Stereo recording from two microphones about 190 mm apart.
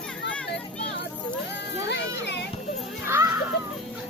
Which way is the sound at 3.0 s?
15° right (ahead or behind).